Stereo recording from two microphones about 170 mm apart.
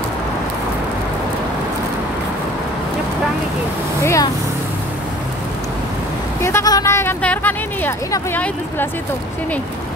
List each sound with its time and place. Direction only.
4.0 s speech: 15° left (ahead or behind)
6.4 s speech: 20° left (ahead or behind)